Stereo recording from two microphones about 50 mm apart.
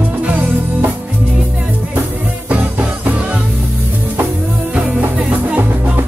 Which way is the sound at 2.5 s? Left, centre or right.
Right.